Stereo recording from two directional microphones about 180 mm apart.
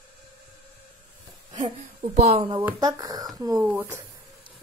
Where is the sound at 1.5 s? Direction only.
25° right (ahead or behind).